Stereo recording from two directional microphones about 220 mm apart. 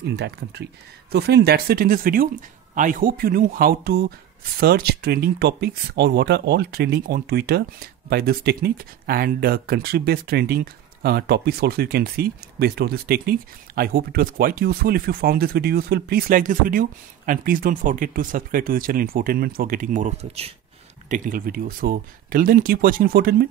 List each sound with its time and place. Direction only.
0.0 s speech: 50° right (ahead or behind); by 20.5 s 30° right (ahead or behind)
21.1 s speech: 40° right (ahead or behind)